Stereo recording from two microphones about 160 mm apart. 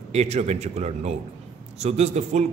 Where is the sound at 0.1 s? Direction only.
45° right (ahead or behind).